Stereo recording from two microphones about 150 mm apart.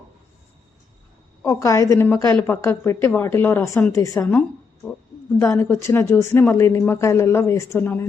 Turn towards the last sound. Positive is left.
turn(degrees=15)  # may be behind; listen again after turning